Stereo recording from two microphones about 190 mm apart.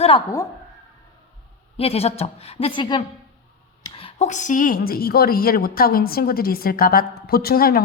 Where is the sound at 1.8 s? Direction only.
30° left (ahead or behind).